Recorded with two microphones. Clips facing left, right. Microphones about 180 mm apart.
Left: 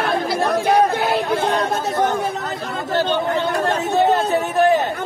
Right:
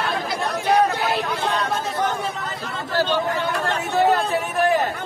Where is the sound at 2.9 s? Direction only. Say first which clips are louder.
Left 2 dB; 25° left (ahead or behind).